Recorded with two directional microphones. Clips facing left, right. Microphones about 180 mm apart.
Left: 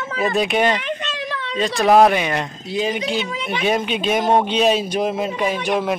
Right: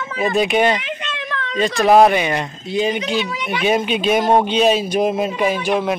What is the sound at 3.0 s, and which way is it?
Speech, 35° left (ahead or behind).